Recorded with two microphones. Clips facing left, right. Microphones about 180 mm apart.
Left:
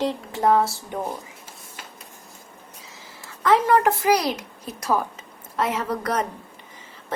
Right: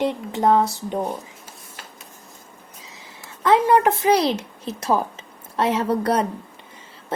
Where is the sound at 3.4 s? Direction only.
20° right (ahead or behind).